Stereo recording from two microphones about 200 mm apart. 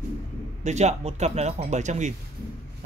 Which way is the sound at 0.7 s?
35° right (ahead or behind).